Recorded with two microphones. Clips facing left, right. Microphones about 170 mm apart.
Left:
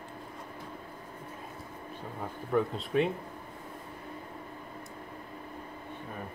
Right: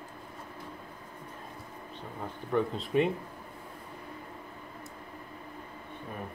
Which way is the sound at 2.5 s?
Centre (ahead or behind).